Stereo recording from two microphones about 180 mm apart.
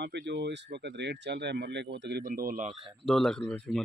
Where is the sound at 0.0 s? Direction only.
70° right (ahead or behind).